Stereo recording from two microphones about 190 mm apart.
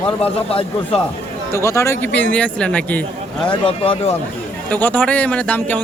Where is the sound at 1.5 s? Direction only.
15° left (ahead or behind).